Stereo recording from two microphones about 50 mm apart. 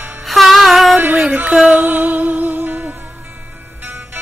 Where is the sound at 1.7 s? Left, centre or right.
Right.